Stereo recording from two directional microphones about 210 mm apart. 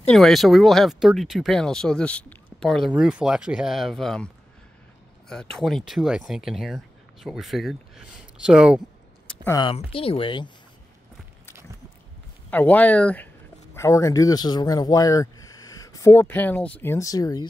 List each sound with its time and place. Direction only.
0.1 s speech: centre (ahead or behind)
5.3 s speech: centre (ahead or behind)
9.3 s a sound: 10° left (ahead or behind)
9.6 s speech: 25° left (ahead or behind)
12.4 s speech: 10° left (ahead or behind)